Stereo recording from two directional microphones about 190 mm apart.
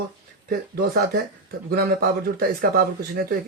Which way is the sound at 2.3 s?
50° right (ahead or behind).